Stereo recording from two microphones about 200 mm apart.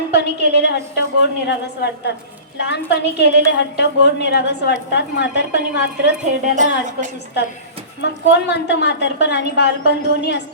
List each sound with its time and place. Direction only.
0.1 s a woman's voice: 55° left (ahead or behind)
6.4 s a woman's voice: 40° right (ahead or behind)
8.0 s a woman's voice: 60° left (ahead or behind)